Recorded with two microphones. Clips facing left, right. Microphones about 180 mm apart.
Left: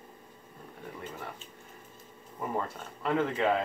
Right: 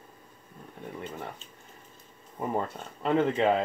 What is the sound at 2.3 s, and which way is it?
Speech, 25° right (ahead or behind).